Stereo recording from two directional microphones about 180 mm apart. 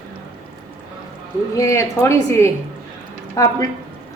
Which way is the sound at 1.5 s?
15° left (ahead or behind).